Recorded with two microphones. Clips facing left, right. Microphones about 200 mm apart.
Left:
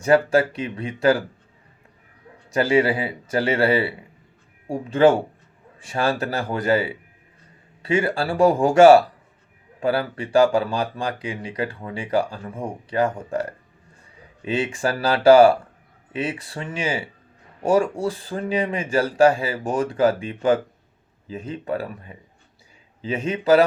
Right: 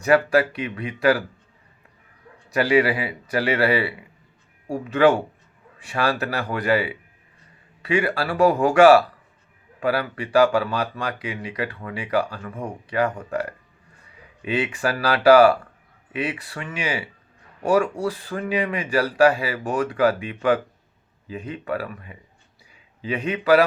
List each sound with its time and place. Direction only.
0.0 s speech: 25° left (ahead or behind)
2.5 s speech: 30° left (ahead or behind)